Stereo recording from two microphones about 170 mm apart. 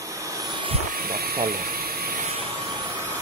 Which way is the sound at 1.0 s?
60° right (ahead or behind).